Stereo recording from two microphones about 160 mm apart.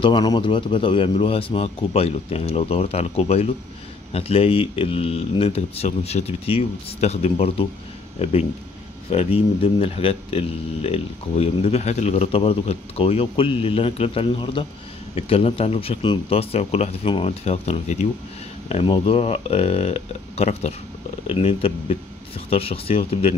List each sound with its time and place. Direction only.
0.0 s speech: 30° left (ahead or behind)